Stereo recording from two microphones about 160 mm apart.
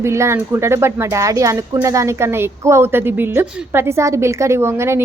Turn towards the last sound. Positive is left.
turn(degrees=-15)  # may be behind; listen again after turning